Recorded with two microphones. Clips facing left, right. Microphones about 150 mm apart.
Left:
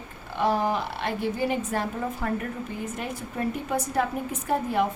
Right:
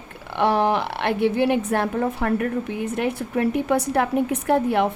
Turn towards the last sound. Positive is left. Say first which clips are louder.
# right 5 dB
turn(degrees=-70)  # may be behind; listen again after turning